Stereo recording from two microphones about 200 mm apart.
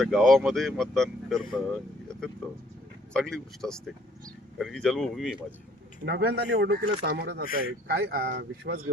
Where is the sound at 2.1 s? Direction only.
5° left (ahead or behind).